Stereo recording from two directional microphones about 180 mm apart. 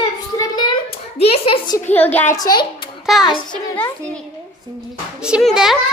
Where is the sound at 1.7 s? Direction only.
15° left (ahead or behind).